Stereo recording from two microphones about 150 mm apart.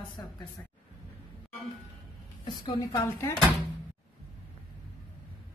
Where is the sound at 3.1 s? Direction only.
15° left (ahead or behind).